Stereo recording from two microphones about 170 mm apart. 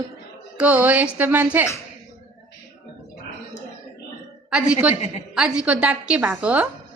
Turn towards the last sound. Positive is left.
turn(degrees=-10)  # may be behind; listen again after turning